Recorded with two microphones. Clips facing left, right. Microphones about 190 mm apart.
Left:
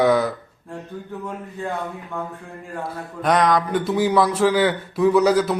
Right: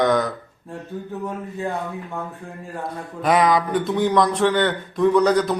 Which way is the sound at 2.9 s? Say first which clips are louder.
Right 1 dB; centre (ahead or behind).